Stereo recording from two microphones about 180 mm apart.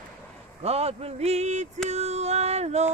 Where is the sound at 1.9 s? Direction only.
40° right (ahead or behind).